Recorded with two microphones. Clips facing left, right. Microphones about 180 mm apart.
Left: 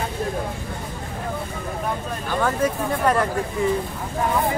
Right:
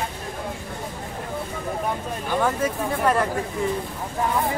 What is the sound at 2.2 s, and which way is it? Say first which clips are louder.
Speech: left 1 dB; 10° right (ahead or behind).